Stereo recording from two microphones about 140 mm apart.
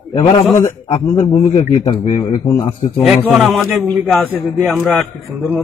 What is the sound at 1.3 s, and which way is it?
A man's voice, 45° left (ahead or behind).